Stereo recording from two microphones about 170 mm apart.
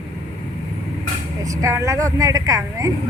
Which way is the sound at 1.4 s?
20° right (ahead or behind).